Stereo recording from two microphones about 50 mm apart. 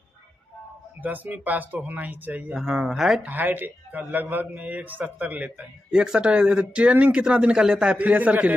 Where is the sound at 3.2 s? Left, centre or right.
Right.